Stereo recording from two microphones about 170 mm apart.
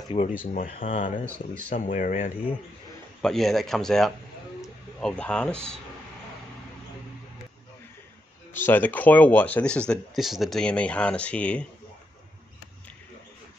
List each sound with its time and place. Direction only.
0.4 s speech: 55° left (ahead or behind)
3.2 s speech: centre (ahead or behind)
8.5 s speech: 10° left (ahead or behind)